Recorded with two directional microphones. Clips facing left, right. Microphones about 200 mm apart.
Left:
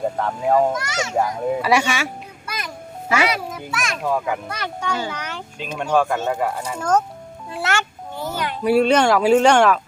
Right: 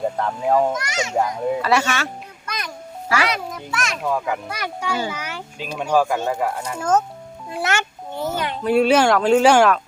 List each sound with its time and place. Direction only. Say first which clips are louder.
0.2 s a child's voice: left 1 dB; centre (ahead or behind)
0.9 s a child's voice: even; 15° right (ahead or behind)
1.1 s a child's voice: even; centre (ahead or behind)
4.5 s a child's voice: even; 10° right (ahead or behind)
7.6 s a sound: even; 20° right (ahead or behind)
8.8 s a child's voice: right 1 dB; 5° right (ahead or behind)